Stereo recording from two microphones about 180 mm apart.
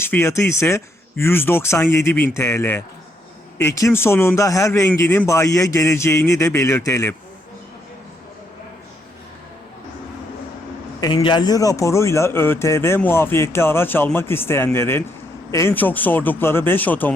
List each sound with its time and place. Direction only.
0.0 s speech: 15° left (ahead or behind)
11.0 s speech: 25° left (ahead or behind); by 17.1 s 10° left (ahead or behind)